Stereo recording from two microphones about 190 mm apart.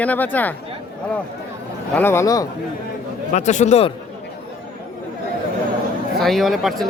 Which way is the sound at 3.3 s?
40° left (ahead or behind).